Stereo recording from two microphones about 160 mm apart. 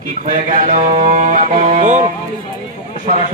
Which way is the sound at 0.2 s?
50° right (ahead or behind).